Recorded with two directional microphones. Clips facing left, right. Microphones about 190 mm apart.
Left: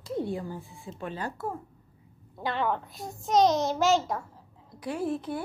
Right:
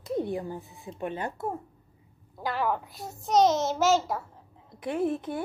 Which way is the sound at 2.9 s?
15° left (ahead or behind).